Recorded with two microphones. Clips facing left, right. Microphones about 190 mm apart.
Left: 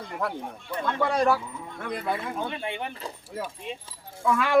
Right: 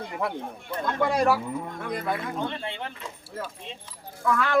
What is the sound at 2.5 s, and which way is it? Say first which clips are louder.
Speech: left 2 dB; 15° left (ahead or behind).